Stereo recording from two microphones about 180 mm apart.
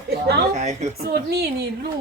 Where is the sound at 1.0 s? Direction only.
60° right (ahead or behind).